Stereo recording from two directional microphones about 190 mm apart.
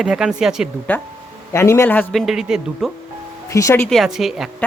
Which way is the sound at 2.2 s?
Centre (ahead or behind).